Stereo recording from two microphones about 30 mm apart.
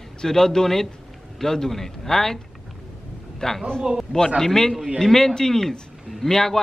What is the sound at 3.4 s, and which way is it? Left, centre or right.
A man's voice, centre.